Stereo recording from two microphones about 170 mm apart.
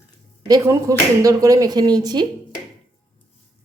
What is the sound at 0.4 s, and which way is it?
Speech, 20° right (ahead or behind).